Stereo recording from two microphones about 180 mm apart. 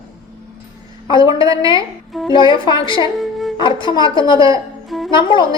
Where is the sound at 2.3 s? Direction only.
25° left (ahead or behind).